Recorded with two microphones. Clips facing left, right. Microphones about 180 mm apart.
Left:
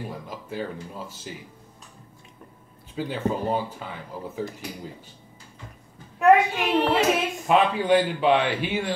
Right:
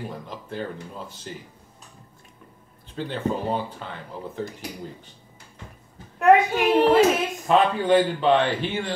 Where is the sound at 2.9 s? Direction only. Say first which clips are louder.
Even; 10° left (ahead or behind).